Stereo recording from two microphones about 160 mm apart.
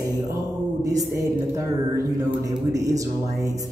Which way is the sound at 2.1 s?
20° right (ahead or behind).